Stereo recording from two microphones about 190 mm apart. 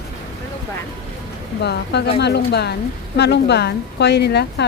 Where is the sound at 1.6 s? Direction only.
60° left (ahead or behind).